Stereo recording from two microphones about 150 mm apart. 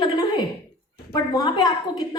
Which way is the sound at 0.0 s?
30° left (ahead or behind).